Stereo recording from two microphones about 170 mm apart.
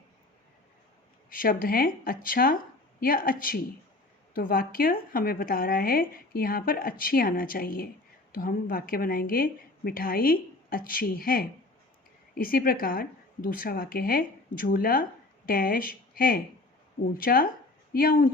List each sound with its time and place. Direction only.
1.3 s speech: 55° left (ahead or behind)